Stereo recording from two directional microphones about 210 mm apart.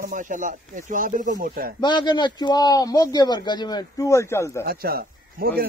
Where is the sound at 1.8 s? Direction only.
20° left (ahead or behind).